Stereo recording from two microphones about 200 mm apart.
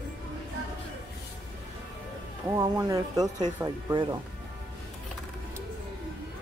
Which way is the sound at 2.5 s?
20° right (ahead or behind).